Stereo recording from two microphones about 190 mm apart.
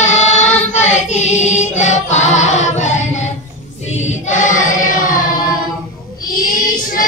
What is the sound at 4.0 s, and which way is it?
Chant, 40° left (ahead or behind).